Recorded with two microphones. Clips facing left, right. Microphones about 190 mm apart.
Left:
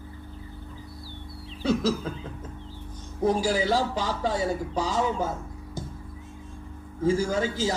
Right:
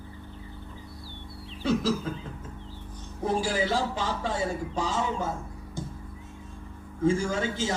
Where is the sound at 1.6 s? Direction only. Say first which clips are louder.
Left 1 dB; 40° left (ahead or behind).